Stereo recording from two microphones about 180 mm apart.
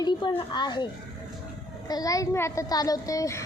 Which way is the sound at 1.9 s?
20° left (ahead or behind).